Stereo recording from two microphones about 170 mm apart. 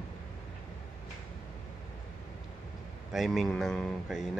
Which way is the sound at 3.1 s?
Centre (ahead or behind).